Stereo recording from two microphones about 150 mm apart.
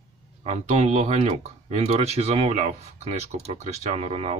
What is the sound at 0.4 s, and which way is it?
Speech, 45° right (ahead or behind).